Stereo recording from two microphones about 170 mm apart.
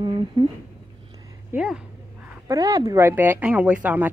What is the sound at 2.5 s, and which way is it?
A woman's voice, 20° right (ahead or behind).